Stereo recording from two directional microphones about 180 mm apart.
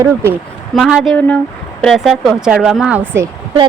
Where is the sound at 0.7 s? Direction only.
Centre (ahead or behind).